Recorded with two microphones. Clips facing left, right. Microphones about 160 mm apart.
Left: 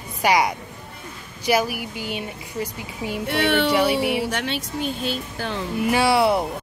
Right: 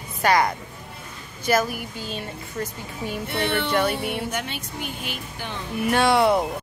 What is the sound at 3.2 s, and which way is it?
Speech, 90° left.